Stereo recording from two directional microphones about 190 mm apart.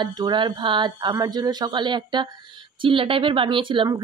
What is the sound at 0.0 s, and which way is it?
Speech, 25° right (ahead or behind).